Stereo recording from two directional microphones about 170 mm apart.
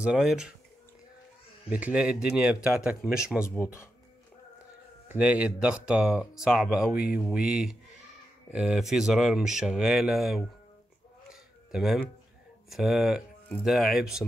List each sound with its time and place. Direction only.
0.0 s speech: 5° right (ahead or behind)
1.7 s speech: 10° right (ahead or behind)
3.4 s speech: 15° left (ahead or behind)
5.0 s speech: 10° right (ahead or behind)
11.2 s a sound: 5° right (ahead or behind)
12.6 s speech: centre (ahead or behind)